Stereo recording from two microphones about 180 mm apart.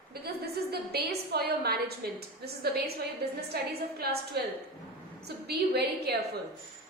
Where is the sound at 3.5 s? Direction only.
60° right (ahead or behind).